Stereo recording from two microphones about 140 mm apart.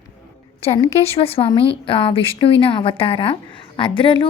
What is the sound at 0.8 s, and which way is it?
Speech, 45° left (ahead or behind).